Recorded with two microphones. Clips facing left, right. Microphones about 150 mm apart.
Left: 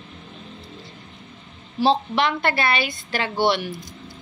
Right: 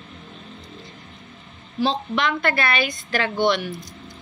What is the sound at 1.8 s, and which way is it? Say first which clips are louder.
Speech: left 3 dB; 30° left (ahead or behind).